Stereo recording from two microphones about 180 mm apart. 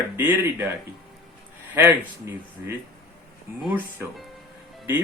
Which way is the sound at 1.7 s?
10° right (ahead or behind).